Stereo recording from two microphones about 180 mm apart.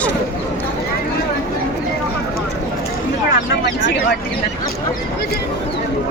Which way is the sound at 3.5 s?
90° left.